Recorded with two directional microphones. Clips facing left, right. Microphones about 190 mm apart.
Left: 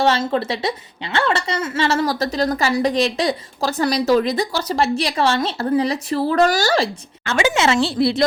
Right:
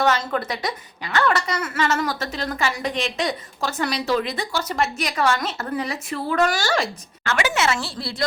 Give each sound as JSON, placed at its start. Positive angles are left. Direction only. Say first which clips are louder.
{"t": 0.0, "sound": "a woman's voice", "louder": "left 3 dB", "side_deg": 30}